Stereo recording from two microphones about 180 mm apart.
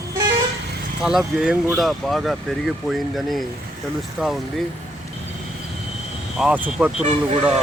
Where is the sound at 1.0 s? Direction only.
5° right (ahead or behind).